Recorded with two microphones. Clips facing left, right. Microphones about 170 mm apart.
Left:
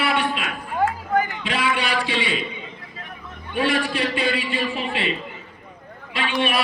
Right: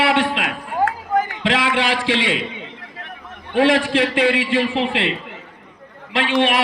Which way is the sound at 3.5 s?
90° right.